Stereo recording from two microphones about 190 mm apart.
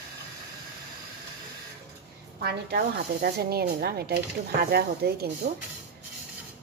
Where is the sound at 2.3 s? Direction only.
55° right (ahead or behind).